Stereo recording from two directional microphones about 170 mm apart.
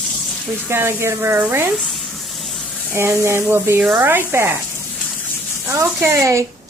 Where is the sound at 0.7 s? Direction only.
15° right (ahead or behind).